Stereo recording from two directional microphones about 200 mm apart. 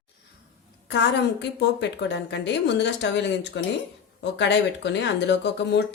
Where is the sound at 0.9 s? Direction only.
60° left (ahead or behind).